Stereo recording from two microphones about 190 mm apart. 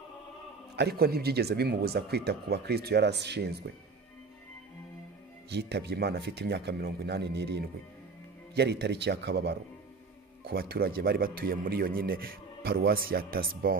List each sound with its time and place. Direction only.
0.7 s speech: 55° right (ahead or behind)
5.5 s speech: 60° right (ahead or behind)